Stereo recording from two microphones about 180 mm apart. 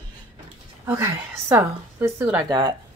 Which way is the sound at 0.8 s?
15° right (ahead or behind).